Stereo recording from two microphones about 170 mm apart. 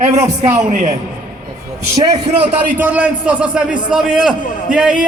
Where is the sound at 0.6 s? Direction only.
45° right (ahead or behind).